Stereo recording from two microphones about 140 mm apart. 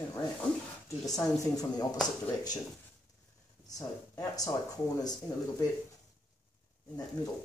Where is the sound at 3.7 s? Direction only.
25° left (ahead or behind).